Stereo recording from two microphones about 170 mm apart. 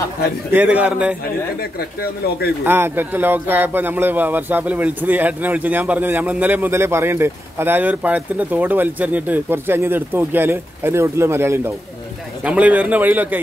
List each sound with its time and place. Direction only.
0.5 s speech: 10° right (ahead or behind)
1.6 s speech: 65° left (ahead or behind)
2.6 s speech: 10° right (ahead or behind)